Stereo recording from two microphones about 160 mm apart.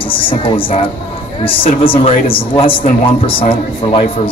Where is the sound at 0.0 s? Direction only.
35° left (ahead or behind).